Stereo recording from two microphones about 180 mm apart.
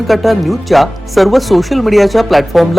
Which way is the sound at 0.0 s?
Centre (ahead or behind).